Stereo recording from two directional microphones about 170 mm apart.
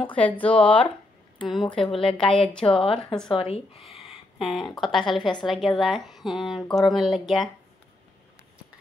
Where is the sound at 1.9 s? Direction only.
30° left (ahead or behind).